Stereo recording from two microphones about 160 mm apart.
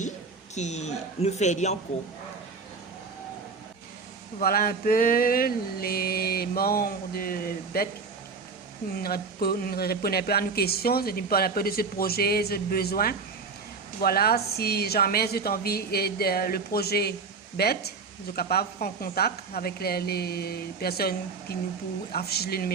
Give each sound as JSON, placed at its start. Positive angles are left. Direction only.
{"t": 0.5, "sound": "speech", "side_deg": 45}
{"t": 4.4, "sound": "speech", "side_deg": 65}
{"t": 9.0, "sound": "speech", "side_deg": 70}
{"t": 21.5, "sound": "speech", "side_deg": 85}